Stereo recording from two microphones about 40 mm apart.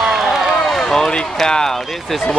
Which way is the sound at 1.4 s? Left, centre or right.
Centre.